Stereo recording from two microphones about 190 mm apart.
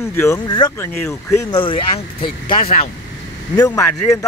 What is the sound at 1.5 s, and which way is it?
Speech, 25° left (ahead or behind).